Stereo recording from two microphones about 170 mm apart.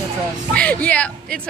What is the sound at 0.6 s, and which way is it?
Speech, 10° left (ahead or behind).